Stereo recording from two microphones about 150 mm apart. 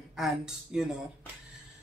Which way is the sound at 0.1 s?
5° right (ahead or behind).